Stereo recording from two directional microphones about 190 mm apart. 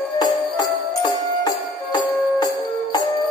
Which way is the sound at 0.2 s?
20° left (ahead or behind).